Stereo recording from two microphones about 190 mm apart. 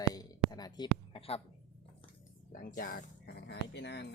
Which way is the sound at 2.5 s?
45° left (ahead or behind).